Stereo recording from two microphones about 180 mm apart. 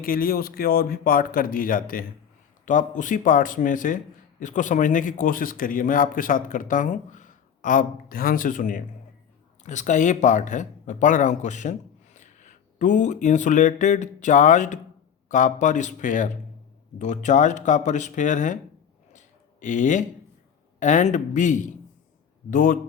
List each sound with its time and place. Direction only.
0.0 s a man's voice: 55° left (ahead or behind)
19.1 s a sound: 45° left (ahead or behind)
20.7 s a man's voice: 45° left (ahead or behind)